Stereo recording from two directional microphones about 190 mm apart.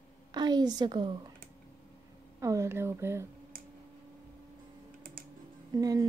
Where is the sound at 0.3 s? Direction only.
20° right (ahead or behind).